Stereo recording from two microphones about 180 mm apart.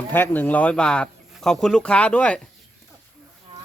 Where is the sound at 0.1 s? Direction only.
10° left (ahead or behind).